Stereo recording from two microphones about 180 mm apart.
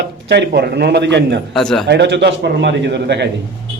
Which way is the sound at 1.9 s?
75° right (ahead or behind).